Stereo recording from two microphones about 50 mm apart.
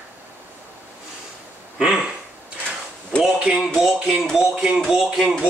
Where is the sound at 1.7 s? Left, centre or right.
Centre.